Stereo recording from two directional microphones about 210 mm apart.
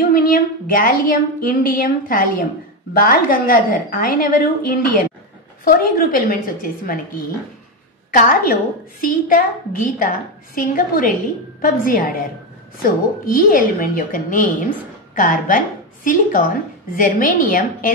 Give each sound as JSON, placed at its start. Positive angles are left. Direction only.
{"t": 0.0, "sound": "a woman's voice", "side_deg": 45}
{"t": 8.1, "sound": "a woman's voice", "side_deg": 40}